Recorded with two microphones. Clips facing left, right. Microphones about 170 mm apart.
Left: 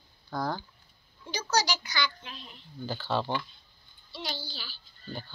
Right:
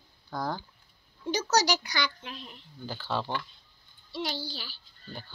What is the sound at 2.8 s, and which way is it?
Speech, 10° right (ahead or behind).